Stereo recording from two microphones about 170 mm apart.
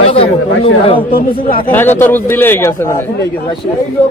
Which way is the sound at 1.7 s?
10° left (ahead or behind).